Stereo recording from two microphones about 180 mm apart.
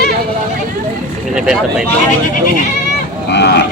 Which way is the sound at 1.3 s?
5° right (ahead or behind).